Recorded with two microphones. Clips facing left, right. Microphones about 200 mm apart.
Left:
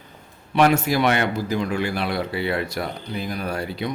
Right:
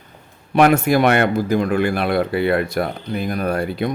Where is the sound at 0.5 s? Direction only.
55° right (ahead or behind).